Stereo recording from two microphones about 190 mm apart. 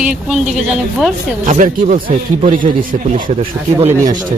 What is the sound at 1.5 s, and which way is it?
Speech, 40° right (ahead or behind).